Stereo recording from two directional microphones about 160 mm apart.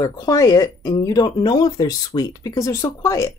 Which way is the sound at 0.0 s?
20° left (ahead or behind).